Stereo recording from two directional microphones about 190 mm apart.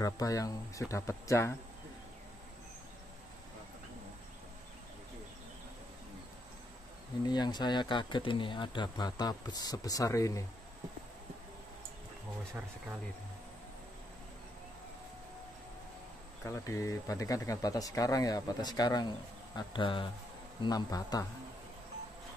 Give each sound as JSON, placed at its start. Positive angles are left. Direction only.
{"t": 0.0, "sound": "speech", "side_deg": 20}
{"t": 7.2, "sound": "speech", "side_deg": 20}
{"t": 12.5, "sound": "speech", "side_deg": -10}
{"t": 16.4, "sound": "speech", "side_deg": 15}